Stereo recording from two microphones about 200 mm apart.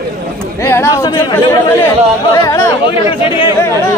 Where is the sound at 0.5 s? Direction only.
15° left (ahead or behind).